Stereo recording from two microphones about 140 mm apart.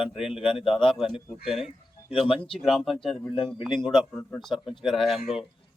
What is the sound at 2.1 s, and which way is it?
Speech, 40° left (ahead or behind).